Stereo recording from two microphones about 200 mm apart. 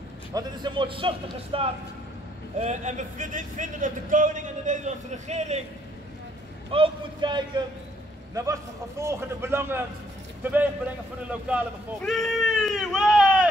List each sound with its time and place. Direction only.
0.3 s a man's voice: 20° right (ahead or behind)
6.7 s a man's voice: 25° right (ahead or behind)
9.0 s a man's voice: 15° right (ahead or behind)